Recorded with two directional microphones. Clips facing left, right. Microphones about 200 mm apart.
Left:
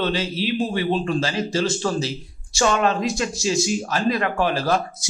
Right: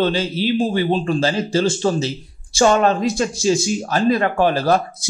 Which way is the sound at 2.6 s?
45° right (ahead or behind).